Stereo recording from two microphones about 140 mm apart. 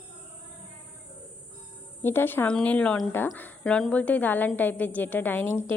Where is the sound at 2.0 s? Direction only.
15° left (ahead or behind).